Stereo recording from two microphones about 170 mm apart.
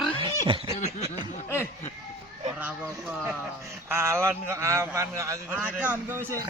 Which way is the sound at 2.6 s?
10° right (ahead or behind).